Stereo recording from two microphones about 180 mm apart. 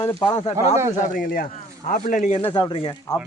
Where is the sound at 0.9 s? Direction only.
45° left (ahead or behind).